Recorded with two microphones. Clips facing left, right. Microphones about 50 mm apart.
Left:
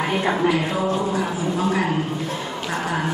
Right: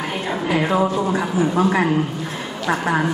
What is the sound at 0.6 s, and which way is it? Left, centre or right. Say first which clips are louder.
A woman's voice: right 4 dB; right.